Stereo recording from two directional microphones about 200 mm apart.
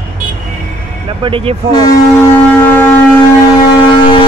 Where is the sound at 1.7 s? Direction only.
20° left (ahead or behind).